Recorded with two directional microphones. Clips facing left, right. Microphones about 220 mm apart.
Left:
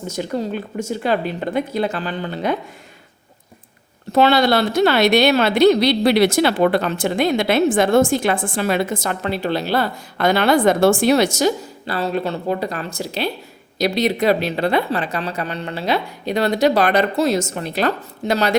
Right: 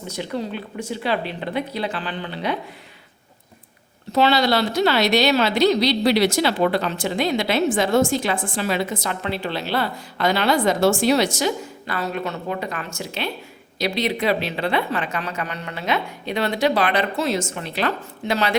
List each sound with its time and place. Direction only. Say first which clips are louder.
0.1 s speech: left 4 dB; 45° left (ahead or behind)
4.1 s speech: left 3 dB; 50° left (ahead or behind)